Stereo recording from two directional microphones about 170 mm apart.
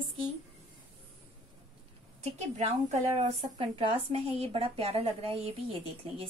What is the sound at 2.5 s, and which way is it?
A woman's voice, 40° right (ahead or behind).